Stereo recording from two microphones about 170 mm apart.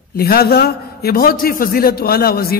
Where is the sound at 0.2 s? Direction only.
65° left (ahead or behind).